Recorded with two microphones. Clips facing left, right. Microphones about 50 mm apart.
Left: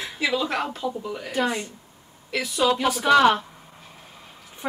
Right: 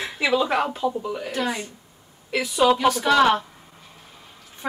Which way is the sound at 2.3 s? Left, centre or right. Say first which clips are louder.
Right 3 dB; centre.